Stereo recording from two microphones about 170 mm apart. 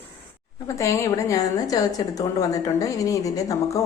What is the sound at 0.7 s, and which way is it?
A woman's voice, 15° left (ahead or behind).